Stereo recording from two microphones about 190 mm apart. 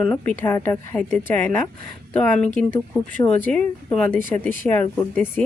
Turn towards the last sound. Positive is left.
turn(degrees=10)  # may be behind; listen again after turning